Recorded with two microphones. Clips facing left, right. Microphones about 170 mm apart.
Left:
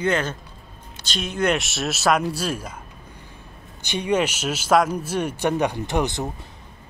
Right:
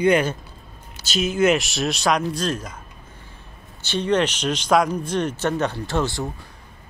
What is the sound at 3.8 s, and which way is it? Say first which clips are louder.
Speech: right 1 dB; 15° left (ahead or behind).